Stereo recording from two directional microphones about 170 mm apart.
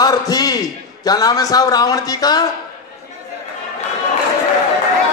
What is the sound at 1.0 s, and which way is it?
A man's voice, 20° left (ahead or behind).